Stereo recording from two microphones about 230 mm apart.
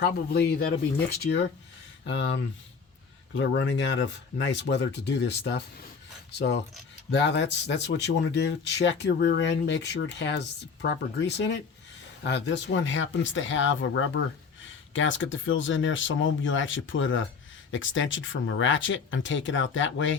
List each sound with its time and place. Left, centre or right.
0.0 s speech: left
7.1 s speech: left